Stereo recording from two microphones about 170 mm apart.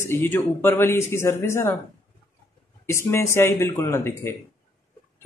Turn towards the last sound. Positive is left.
turn(degrees=15)  # may be behind; listen again after turning